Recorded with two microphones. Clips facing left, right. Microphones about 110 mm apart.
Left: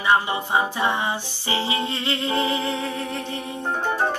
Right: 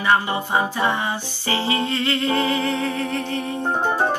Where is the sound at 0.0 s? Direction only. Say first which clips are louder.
Right 1 dB; 15° left (ahead or behind).